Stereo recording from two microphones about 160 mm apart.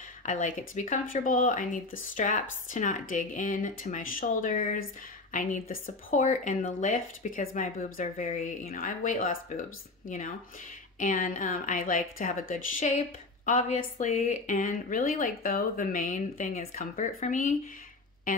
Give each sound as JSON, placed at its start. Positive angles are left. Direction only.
{"t": 0.2, "sound": "speech", "side_deg": 50}